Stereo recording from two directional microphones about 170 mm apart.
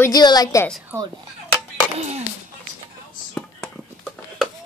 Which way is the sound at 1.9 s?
40° right (ahead or behind).